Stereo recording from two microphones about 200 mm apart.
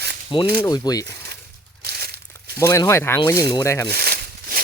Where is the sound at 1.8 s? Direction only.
50° right (ahead or behind).